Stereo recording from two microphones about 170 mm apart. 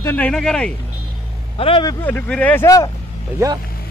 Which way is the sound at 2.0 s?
10° left (ahead or behind).